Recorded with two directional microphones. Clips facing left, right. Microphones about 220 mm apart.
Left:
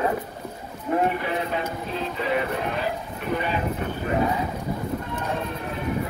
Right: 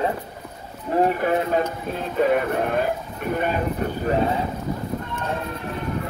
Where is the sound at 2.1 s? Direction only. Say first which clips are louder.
Right 7 dB; 50° right (ahead or behind).